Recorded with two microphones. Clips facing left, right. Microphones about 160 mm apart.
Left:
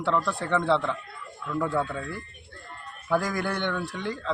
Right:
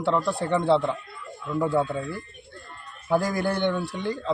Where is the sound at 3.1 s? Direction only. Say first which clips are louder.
Right 3 dB; 30° right (ahead or behind).